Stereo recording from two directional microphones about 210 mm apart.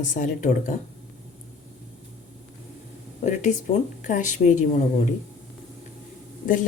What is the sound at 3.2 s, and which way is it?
Speech, 35° left (ahead or behind).